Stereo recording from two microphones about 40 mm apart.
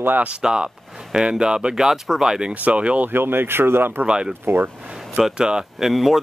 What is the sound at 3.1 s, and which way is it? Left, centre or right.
Speech, right.